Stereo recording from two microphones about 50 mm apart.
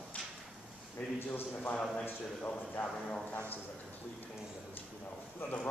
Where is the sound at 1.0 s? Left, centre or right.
Left.